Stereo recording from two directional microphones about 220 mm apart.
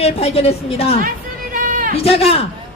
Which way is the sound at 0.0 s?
25° left (ahead or behind).